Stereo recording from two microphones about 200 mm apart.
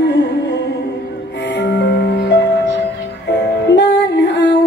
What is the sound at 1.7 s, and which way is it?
Music, 55° left (ahead or behind).